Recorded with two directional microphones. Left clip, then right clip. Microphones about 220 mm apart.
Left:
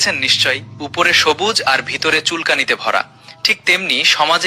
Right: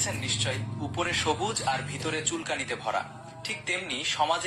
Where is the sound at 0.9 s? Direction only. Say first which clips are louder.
Left 15 dB; 45° left (ahead or behind).